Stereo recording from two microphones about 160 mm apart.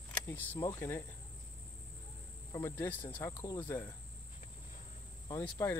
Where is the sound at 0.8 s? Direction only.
15° left (ahead or behind).